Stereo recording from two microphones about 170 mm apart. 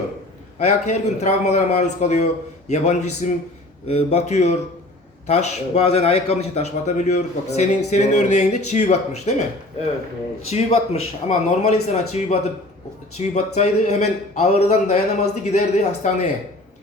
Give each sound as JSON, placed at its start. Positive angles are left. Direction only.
{"t": 0.6, "sound": "a man's voice", "side_deg": 40}
{"t": 10.5, "sound": "a man's voice", "side_deg": 40}